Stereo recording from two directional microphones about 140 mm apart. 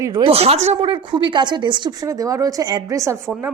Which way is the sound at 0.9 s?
35° right (ahead or behind).